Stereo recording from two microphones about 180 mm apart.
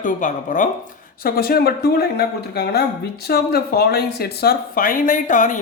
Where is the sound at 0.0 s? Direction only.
45° left (ahead or behind).